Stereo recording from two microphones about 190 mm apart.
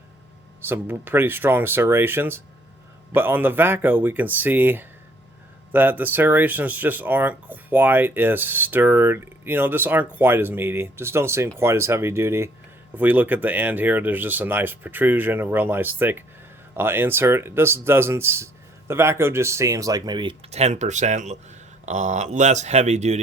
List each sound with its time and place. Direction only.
0.6 s speech: 10° right (ahead or behind); by 23.2 s 35° right (ahead or behind)